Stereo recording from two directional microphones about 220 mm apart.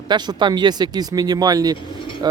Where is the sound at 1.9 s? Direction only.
25° left (ahead or behind).